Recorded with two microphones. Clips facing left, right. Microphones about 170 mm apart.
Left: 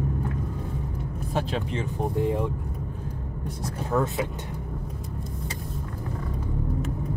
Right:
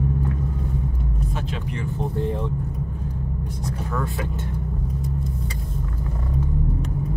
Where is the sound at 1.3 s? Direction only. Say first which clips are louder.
Left 2 dB; 35° left (ahead or behind).